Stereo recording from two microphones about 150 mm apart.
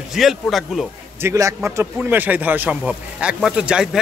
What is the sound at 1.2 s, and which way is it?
A man's voice, 20° right (ahead or behind).